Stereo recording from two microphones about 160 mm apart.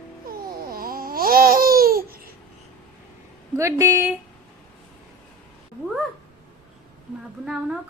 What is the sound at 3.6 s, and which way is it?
Speech, 20° right (ahead or behind).